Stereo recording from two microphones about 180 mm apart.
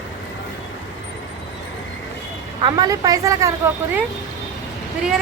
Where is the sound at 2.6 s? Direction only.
20° right (ahead or behind).